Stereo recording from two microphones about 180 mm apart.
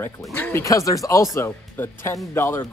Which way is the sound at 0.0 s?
10° left (ahead or behind).